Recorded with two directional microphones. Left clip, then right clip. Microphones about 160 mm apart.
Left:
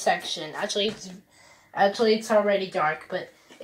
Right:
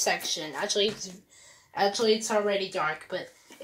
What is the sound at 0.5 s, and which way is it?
Speech, 35° right (ahead or behind).